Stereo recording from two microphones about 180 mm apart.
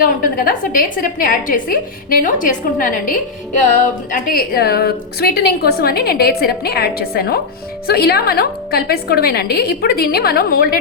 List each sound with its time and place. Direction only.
0.0 s a woman's voice: 50° left (ahead or behind)